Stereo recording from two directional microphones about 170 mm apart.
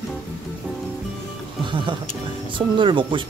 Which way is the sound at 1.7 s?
30° right (ahead or behind).